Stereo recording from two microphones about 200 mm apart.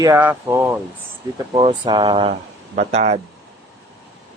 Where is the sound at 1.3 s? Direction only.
25° right (ahead or behind).